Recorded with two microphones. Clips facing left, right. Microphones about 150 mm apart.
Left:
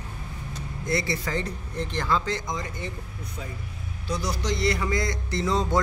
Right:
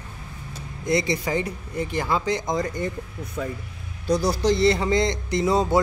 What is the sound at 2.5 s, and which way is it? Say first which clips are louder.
A man's voice: right 7 dB; 35° right (ahead or behind).